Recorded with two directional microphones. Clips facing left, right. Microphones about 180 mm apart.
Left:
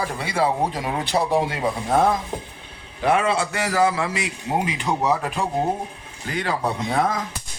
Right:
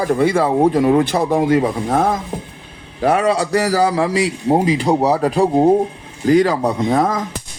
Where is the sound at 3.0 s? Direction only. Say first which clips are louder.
Right 5 dB; 40° right (ahead or behind).